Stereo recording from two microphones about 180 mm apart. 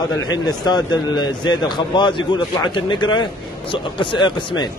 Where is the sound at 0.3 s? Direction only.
25° left (ahead or behind).